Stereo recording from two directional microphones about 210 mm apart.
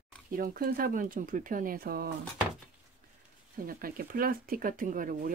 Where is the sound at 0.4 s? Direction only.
45° right (ahead or behind).